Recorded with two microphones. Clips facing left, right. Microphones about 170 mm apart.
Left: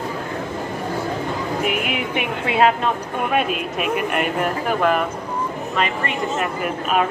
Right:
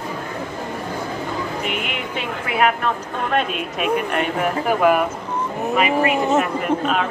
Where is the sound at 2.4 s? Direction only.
25° left (ahead or behind).